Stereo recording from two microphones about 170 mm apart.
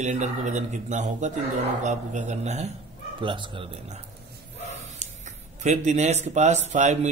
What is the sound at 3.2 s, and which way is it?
Speech, 30° right (ahead or behind).